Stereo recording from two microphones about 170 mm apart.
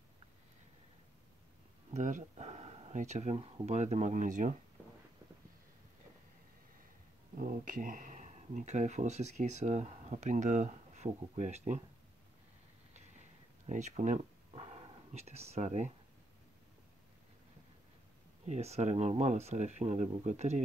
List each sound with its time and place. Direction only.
2.0 s speech: 45° right (ahead or behind); by 3.7 s 30° right (ahead or behind)
3.7 s speech: 45° right (ahead or behind)
7.3 s speech: 50° right (ahead or behind)
13.7 s speech: 40° right (ahead or behind)
14.5 s a sound: 30° right (ahead or behind)
18.4 s speech: 40° right (ahead or behind)